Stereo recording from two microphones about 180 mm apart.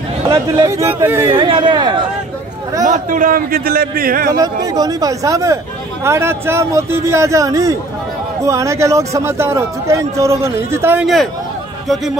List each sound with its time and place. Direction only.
0.3 s speech: 15° right (ahead or behind)
1.4 s speech: 25° right (ahead or behind)
2.8 s a man's voice: 45° right (ahead or behind)
4.3 s speech: 20° right (ahead or behind)